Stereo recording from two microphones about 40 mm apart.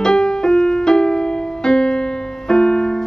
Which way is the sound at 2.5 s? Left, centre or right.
Centre.